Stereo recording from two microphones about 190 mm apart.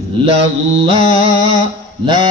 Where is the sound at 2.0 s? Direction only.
25° right (ahead or behind).